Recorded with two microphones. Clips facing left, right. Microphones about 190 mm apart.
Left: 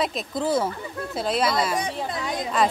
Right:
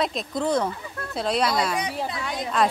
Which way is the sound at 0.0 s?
Centre (ahead or behind).